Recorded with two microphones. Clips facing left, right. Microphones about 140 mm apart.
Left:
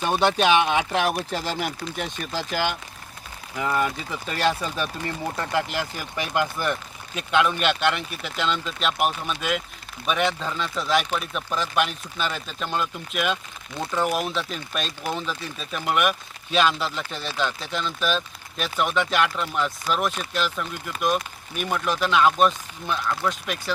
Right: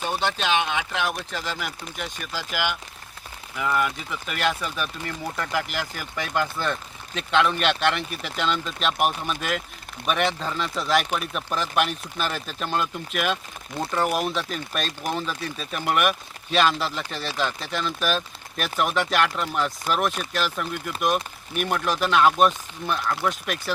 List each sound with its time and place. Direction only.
0.1 s speech: 50° left (ahead or behind)
3.5 s speech: 25° left (ahead or behind); by 23.7 s 5° right (ahead or behind)